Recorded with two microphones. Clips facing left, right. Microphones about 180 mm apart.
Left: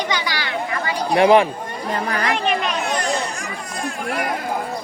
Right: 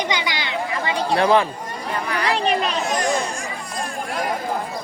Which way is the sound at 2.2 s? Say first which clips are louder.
Right 3 dB; 35° right (ahead or behind).